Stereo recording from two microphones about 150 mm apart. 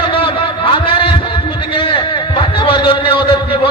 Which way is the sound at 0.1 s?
35° left (ahead or behind).